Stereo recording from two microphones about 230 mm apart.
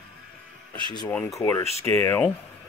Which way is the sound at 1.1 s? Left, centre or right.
Centre.